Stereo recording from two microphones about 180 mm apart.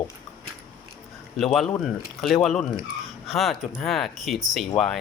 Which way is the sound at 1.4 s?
Centre (ahead or behind).